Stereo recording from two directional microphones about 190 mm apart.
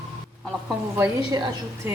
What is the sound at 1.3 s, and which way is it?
Speech, 20° right (ahead or behind).